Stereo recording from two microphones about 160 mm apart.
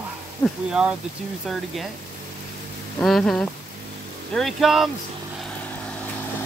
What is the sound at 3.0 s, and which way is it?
Speech, centre (ahead or behind).